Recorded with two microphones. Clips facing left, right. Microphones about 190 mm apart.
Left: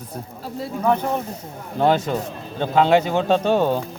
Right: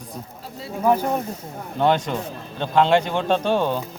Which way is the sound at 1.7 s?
5° left (ahead or behind).